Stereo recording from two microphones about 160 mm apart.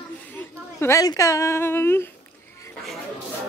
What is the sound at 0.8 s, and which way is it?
Speech, 20° left (ahead or behind).